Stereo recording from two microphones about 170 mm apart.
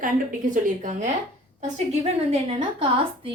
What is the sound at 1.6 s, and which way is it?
Speech, 40° right (ahead or behind).